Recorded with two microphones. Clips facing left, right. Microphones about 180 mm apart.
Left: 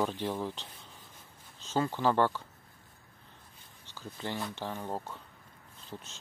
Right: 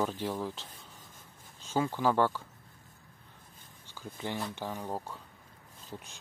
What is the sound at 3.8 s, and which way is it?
Speech, 15° right (ahead or behind).